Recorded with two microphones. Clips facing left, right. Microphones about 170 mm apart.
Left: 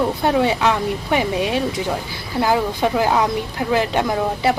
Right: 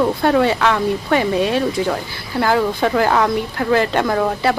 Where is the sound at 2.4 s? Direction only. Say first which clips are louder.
Right 2 dB; 15° left (ahead or behind).